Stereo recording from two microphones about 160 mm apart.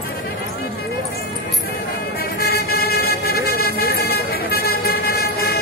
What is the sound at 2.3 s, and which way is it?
Vehicle, 75° left (ahead or behind).